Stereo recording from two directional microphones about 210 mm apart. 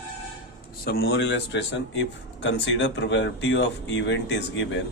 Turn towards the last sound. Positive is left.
turn(degrees=60)  # may be behind; listen again after turning